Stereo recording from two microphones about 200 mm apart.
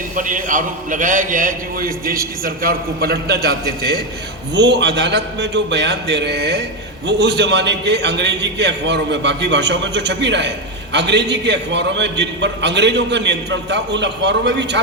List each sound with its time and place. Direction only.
0.2 s a man's voice: 40° right (ahead or behind); by 14.8 s 60° right (ahead or behind)